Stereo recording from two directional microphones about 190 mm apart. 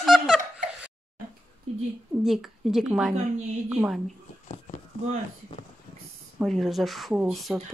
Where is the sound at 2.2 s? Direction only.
Centre (ahead or behind).